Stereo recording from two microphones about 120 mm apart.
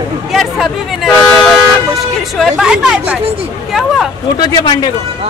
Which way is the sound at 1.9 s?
5° right (ahead or behind).